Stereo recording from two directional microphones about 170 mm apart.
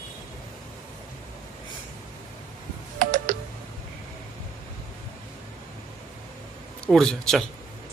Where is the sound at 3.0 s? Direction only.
50° right (ahead or behind).